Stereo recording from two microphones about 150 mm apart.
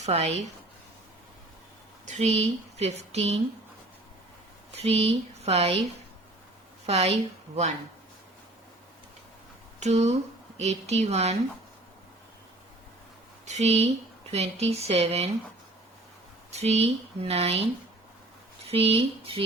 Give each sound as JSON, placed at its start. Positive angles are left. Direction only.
{"t": 0.0, "sound": "speech", "side_deg": -45}
{"t": 2.0, "sound": "speech", "side_deg": -50}
{"t": 4.8, "sound": "speech", "side_deg": -45}
{"t": 6.8, "sound": "speech", "side_deg": -40}
{"t": 9.8, "sound": "speech", "side_deg": -50}
{"t": 13.4, "sound": "speech", "side_deg": -50}
{"t": 16.5, "sound": "speech", "side_deg": -45}
{"t": 18.7, "sound": "speech", "side_deg": -40}